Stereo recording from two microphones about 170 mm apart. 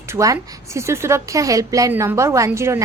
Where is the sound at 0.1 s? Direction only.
20° right (ahead or behind).